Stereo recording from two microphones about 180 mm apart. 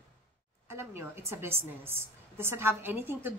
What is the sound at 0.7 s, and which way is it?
A woman's voice, 15° right (ahead or behind).